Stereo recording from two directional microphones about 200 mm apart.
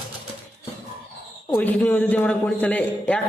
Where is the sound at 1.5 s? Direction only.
5° left (ahead or behind).